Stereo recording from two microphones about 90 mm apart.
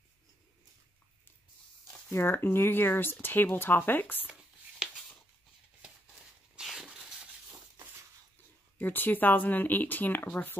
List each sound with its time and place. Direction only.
2.0 s speech: 25° left (ahead or behind)
6.5 s a sound: 5° right (ahead or behind)
8.7 s speech: 20° left (ahead or behind)